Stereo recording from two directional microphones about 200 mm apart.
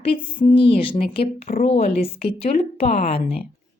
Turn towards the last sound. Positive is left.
turn(degrees=30)  # may be behind; listen again after turning